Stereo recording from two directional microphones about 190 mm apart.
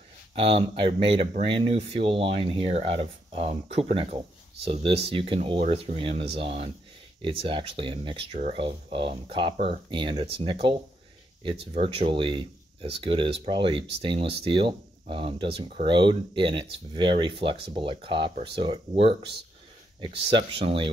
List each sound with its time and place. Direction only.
0.3 s speech: 30° right (ahead or behind)